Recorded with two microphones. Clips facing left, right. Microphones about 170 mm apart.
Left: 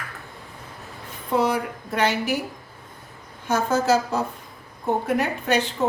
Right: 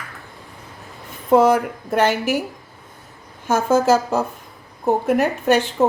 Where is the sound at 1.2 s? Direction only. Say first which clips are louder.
Right 8 dB; 45° right (ahead or behind).